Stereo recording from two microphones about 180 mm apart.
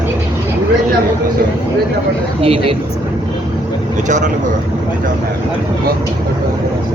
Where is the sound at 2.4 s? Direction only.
30° right (ahead or behind).